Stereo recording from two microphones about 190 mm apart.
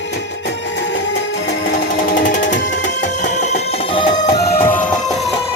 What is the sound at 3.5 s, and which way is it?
Music, 30° left (ahead or behind).